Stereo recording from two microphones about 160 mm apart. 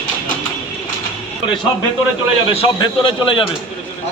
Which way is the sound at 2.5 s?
35° left (ahead or behind).